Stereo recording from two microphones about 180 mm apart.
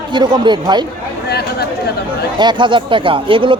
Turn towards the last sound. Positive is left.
turn(degrees=-30)  # may be behind; listen again after turning